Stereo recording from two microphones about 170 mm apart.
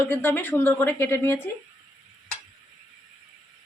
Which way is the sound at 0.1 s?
10° left (ahead or behind).